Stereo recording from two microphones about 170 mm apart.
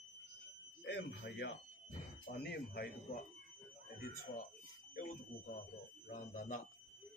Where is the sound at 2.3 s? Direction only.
65° left (ahead or behind).